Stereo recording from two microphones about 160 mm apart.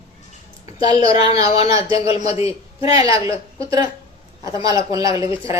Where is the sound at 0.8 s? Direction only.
35° left (ahead or behind).